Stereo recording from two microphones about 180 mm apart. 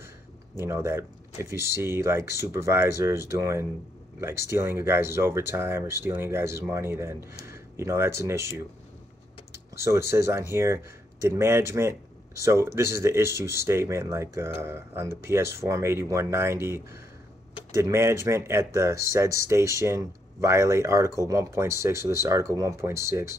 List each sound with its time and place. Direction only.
0.6 s speech: 15° right (ahead or behind)
7.4 s a sound: 15° right (ahead or behind)
8.2 s speech: 15° right (ahead or behind)
10.1 s speech: 15° right (ahead or behind)